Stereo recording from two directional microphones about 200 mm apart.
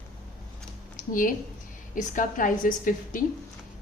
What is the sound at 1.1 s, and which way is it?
A woman's voice, 45° left (ahead or behind).